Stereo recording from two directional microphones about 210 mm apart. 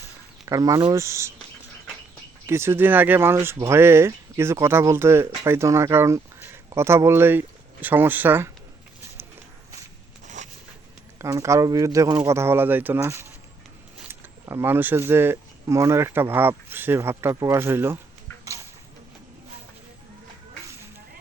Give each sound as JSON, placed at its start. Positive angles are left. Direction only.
{"t": 0.4, "sound": "speech", "side_deg": -15}
{"t": 2.5, "sound": "speech", "side_deg": -10}
{"t": 10.2, "sound": "a sound", "side_deg": -35}
{"t": 11.2, "sound": "speech", "side_deg": -15}